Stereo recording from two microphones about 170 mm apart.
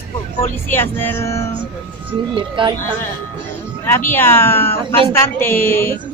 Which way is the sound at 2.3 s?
30° right (ahead or behind).